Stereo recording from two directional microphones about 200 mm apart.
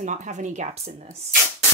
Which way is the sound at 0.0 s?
35° right (ahead or behind).